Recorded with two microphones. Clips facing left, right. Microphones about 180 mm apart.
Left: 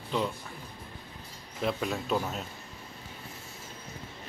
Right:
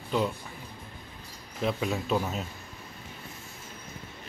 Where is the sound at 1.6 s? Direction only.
Centre (ahead or behind).